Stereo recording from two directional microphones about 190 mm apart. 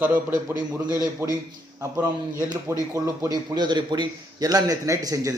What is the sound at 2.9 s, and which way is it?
A man's voice, 20° right (ahead or behind).